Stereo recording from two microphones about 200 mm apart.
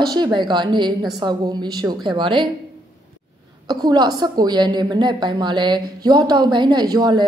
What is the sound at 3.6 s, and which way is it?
A woman's voice, 20° right (ahead or behind).